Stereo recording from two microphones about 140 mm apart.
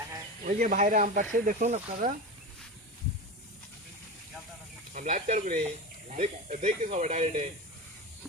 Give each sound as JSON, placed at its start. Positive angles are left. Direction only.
{"t": 0.4, "sound": "speech", "side_deg": -65}
{"t": 4.9, "sound": "speech", "side_deg": -70}
{"t": 6.1, "sound": "speech", "side_deg": -50}
{"t": 6.6, "sound": "speech", "side_deg": -60}